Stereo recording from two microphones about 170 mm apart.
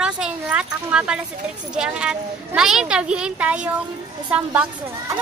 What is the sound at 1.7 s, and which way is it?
Speech, 5° right (ahead or behind).